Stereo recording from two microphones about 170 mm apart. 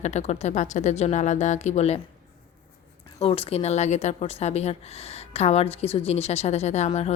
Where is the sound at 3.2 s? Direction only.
35° left (ahead or behind).